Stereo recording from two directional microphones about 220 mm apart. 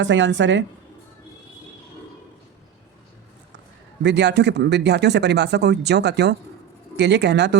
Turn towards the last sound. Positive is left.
turn(degrees=-50)  # may be behind; listen again after turning